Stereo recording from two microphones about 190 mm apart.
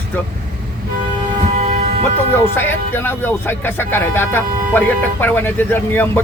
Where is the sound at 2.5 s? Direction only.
10° left (ahead or behind).